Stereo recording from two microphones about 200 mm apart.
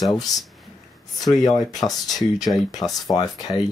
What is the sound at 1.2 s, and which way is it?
Speech, 20° left (ahead or behind).